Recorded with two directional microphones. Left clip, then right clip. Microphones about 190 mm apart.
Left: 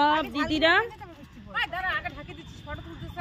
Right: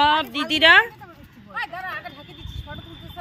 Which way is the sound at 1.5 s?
15° left (ahead or behind).